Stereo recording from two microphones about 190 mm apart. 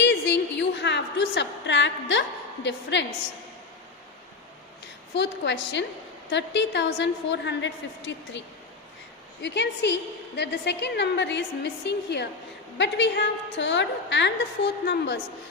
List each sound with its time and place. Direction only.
0.0 s a sound: 65° left (ahead or behind)
2.6 s a woman's voice: 65° left (ahead or behind)
5.1 s a woman's voice: 65° left (ahead or behind)
9.4 s a woman's voice: 65° left (ahead or behind)